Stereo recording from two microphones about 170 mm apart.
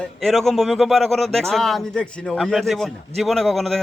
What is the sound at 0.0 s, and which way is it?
Speech, centre (ahead or behind).